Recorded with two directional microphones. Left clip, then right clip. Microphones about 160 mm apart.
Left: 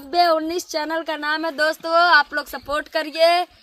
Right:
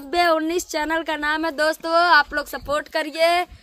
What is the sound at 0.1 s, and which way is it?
Speech, 55° right (ahead or behind).